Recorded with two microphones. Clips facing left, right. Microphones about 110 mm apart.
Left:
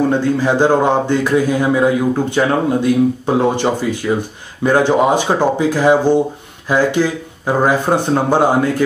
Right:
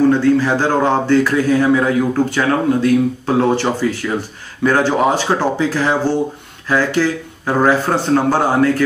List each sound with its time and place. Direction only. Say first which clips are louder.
0.1 s speech: right 1 dB; 15° left (ahead or behind)